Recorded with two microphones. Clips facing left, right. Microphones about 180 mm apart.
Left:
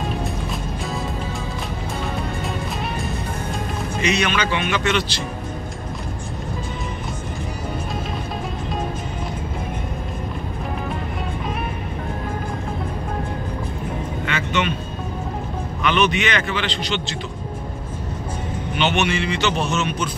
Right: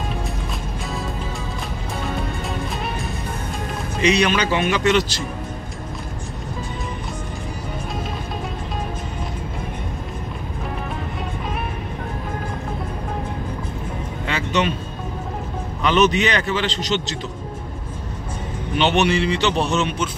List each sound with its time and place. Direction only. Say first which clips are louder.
4.0 s speech: right 4 dB; 35° right (ahead or behind)
14.3 s vehicle: right 2 dB; 35° right (ahead or behind)
15.9 s speech: right 3 dB; 40° right (ahead or behind)
18.8 s speech: right 3 dB; 35° right (ahead or behind)